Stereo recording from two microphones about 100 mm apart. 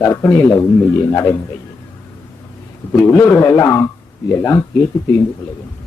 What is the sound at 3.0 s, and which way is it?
Speech, 25° left (ahead or behind).